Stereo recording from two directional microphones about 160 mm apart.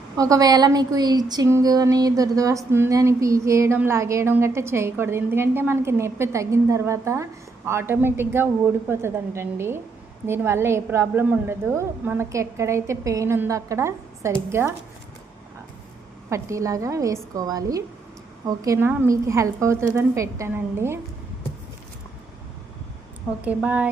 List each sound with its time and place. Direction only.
0.2 s speech: 20° right (ahead or behind)
16.3 s a woman's voice: 20° right (ahead or behind)
23.6 s speech: 10° right (ahead or behind)